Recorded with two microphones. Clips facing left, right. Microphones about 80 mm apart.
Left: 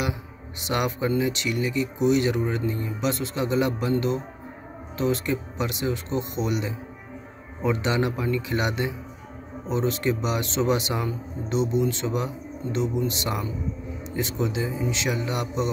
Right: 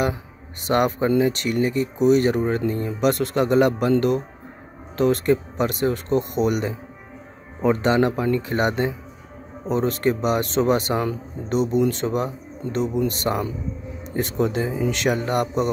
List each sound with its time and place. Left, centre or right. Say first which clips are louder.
0.0 s speech: right 6 dB; right
4.9 s speech: right 6 dB; right